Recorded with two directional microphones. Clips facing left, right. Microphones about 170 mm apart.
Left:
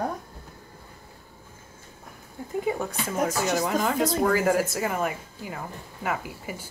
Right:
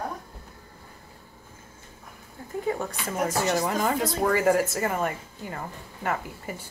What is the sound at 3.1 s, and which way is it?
Speech, centre (ahead or behind).